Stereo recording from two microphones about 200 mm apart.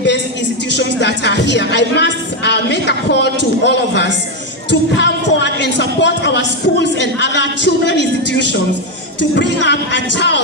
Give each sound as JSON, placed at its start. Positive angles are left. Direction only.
{"t": 0.7, "sound": "a woman's voice", "side_deg": 60}